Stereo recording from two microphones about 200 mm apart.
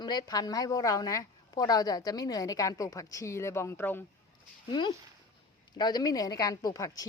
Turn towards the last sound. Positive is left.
turn(degrees=15)  # may be behind; listen again after turning